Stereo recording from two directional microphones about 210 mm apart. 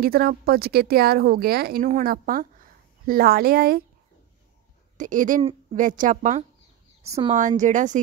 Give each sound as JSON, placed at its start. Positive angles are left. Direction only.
{"t": 0.0, "sound": "a woman's voice", "side_deg": -45}
{"t": 4.9, "sound": "a woman's voice", "side_deg": -40}
{"t": 5.4, "sound": "a woman's voice", "side_deg": -25}
{"t": 7.1, "sound": "a woman's voice", "side_deg": -15}
{"t": 7.3, "sound": "a woman's voice", "side_deg": -35}